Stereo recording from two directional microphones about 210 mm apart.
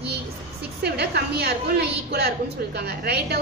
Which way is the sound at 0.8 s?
50° right (ahead or behind).